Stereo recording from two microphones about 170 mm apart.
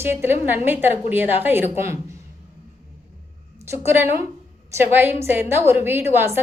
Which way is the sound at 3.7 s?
15° right (ahead or behind).